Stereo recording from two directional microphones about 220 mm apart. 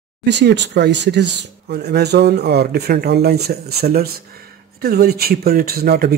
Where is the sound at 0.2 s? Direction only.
50° right (ahead or behind).